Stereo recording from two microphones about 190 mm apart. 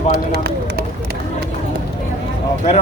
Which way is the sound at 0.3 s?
55° right (ahead or behind).